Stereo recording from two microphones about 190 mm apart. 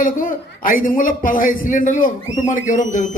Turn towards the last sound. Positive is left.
turn(degrees=40)  # may be behind; listen again after turning